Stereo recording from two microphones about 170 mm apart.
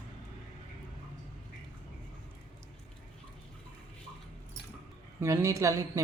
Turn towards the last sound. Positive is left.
turn(degrees=-20)  # may be behind; listen again after turning